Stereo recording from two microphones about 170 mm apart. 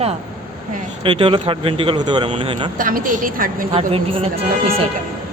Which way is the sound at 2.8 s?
55° right (ahead or behind).